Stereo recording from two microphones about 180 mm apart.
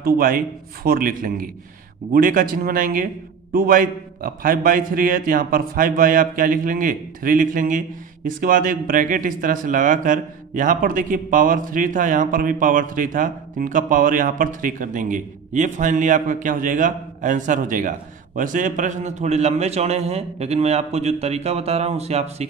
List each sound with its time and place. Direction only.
0.0 s speech: 50° right (ahead or behind); by 22.5 s 35° right (ahead or behind)